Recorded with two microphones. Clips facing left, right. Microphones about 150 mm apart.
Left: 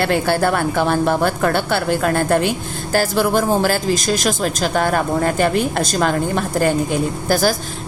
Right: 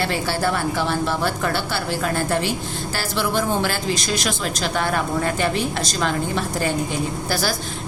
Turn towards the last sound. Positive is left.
turn(degrees=45)  # may be behind; listen again after turning